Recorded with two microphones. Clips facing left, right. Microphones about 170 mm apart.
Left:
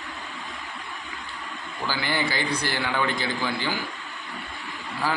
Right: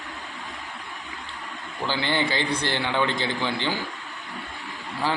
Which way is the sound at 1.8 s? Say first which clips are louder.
Right 2 dB; 20° right (ahead or behind).